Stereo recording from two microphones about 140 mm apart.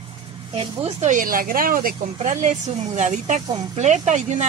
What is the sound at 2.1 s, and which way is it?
Speech, 55° right (ahead or behind).